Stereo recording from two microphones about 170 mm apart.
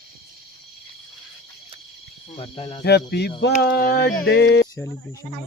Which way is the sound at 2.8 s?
75° left (ahead or behind).